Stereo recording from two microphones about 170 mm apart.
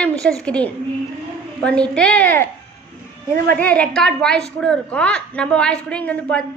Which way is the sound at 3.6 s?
10° left (ahead or behind).